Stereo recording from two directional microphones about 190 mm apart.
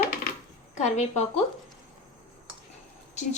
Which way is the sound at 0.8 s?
40° left (ahead or behind).